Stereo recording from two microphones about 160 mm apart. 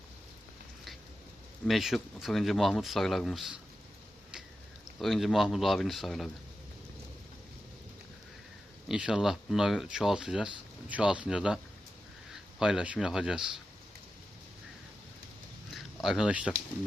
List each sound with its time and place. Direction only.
1.6 s speech: centre (ahead or behind)
4.9 s speech: centre (ahead or behind)
8.9 s a man's voice: 5° right (ahead or behind)
15.7 s a sound: centre (ahead or behind)